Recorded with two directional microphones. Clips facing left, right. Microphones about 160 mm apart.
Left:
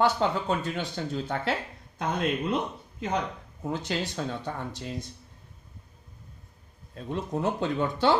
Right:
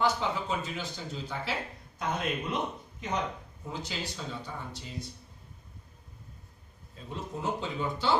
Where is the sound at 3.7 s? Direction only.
60° left (ahead or behind).